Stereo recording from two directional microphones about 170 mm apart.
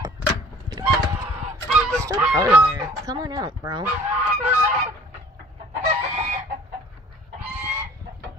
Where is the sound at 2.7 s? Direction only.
20° right (ahead or behind).